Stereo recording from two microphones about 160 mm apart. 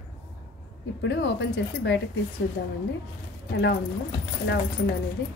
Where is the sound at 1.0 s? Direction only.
90° left.